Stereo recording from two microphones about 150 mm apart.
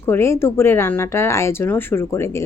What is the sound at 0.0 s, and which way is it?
A woman's voice, 15° left (ahead or behind).